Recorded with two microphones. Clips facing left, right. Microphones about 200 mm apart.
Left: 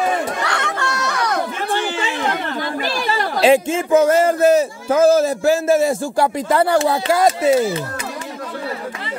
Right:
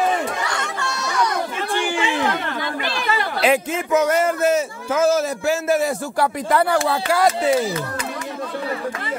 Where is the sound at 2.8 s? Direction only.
40° left (ahead or behind); by 7.6 s 25° left (ahead or behind).